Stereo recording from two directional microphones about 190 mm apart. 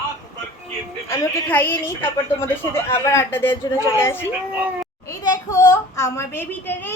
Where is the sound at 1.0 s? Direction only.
15° left (ahead or behind).